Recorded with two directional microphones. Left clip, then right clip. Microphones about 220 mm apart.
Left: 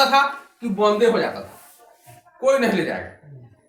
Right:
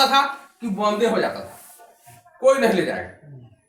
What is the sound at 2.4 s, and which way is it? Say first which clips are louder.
Speech: right 2 dB; centre (ahead or behind).